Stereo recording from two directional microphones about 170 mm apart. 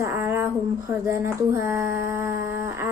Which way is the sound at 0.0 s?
15° right (ahead or behind).